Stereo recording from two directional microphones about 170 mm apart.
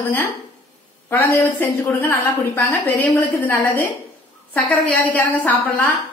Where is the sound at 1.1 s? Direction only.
10° left (ahead or behind).